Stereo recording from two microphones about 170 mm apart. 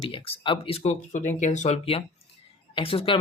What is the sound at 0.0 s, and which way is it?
Speech, 30° left (ahead or behind).